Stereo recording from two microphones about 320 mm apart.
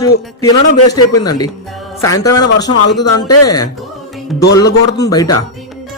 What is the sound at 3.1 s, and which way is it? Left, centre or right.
Speech, left.